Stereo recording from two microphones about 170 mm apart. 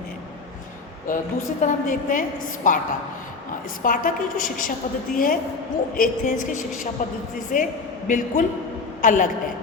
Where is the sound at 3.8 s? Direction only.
50° left (ahead or behind).